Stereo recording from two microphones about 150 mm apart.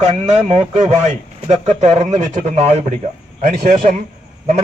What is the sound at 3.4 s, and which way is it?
Speech, 60° right (ahead or behind).